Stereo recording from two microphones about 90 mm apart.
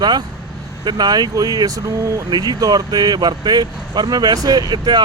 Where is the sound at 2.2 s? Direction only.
50° right (ahead or behind).